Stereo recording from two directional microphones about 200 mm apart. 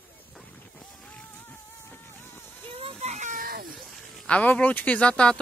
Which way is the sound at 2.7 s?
30° right (ahead or behind).